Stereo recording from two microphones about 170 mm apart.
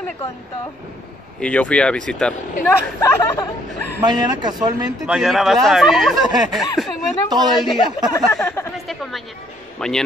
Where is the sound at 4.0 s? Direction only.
25° right (ahead or behind).